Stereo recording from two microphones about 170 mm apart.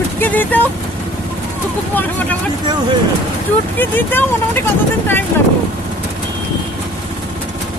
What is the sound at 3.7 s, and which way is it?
Speech, 10° left (ahead or behind).